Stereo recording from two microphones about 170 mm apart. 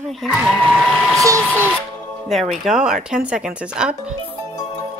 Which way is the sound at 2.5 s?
Centre (ahead or behind).